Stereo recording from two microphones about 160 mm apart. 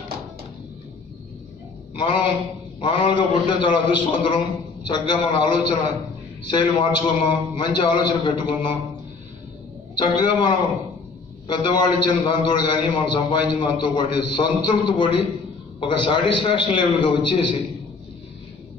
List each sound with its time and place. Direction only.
2.0 s a man's voice: 30° left (ahead or behind)
9.9 s a man's voice: 30° left (ahead or behind)